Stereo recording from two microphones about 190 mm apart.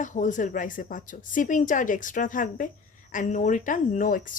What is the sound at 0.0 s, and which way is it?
Speech, 40° left (ahead or behind).